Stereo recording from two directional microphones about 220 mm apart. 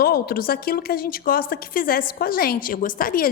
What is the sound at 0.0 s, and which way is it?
A woman's voice, 45° left (ahead or behind).